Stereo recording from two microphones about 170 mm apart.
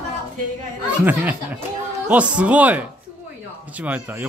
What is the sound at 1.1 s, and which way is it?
Speech, 10° right (ahead or behind).